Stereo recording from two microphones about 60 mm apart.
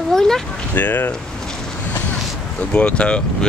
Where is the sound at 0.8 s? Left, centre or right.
Left.